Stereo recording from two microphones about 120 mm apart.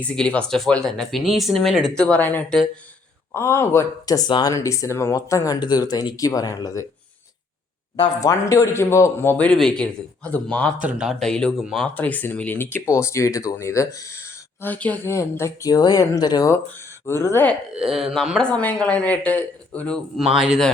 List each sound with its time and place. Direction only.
0.0 s speech: 10° left (ahead or behind)
4.0 s speech: 30° left (ahead or behind)
4.5 s speech: 25° left (ahead or behind)
7.9 s speech: 35° left (ahead or behind)
9.4 s speech: 5° left (ahead or behind)
10.8 s speech: 10° right (ahead or behind)
11.2 s speech: 5° left (ahead or behind)
11.9 s speech: 15° left (ahead or behind)
14.6 s speech: 15° left (ahead or behind); by 16.6 s 30° left (ahead or behind)
17.1 s speech: 20° left (ahead or behind)
17.7 s speech: 5° right (ahead or behind)
20.4 s speech: 5° right (ahead or behind)